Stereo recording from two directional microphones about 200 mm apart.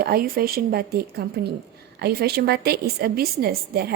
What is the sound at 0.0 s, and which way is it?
A woman's voice, 50° right (ahead or behind).